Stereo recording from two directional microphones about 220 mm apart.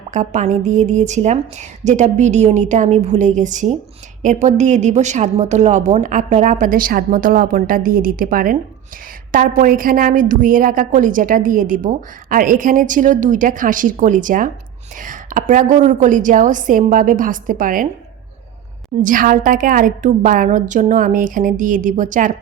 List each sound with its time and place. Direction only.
0.1 s a woman's voice: 35° right (ahead or behind)
19.0 s a woman's voice: 40° right (ahead or behind)